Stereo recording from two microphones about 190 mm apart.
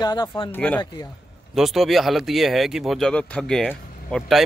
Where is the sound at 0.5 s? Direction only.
10° left (ahead or behind).